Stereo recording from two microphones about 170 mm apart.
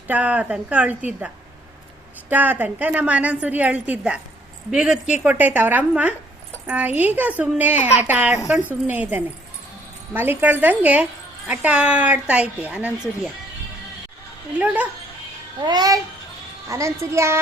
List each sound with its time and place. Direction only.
0.1 s a woman's voice: 10° right (ahead or behind)
2.3 s a woman's voice: 10° right (ahead or behind)
14.6 s a woman's voice: 10° right (ahead or behind)
15.6 s a child's voice: 25° right (ahead or behind)